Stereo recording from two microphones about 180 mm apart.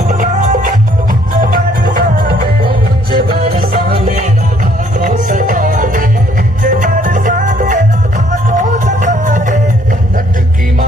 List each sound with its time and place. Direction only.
0.1 s music: 45° right (ahead or behind)